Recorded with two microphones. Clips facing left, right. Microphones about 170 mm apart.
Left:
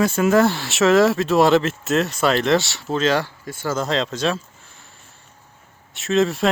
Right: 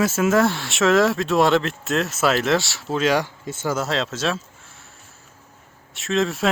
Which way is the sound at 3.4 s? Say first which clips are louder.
Right 2 dB; 25° right (ahead or behind).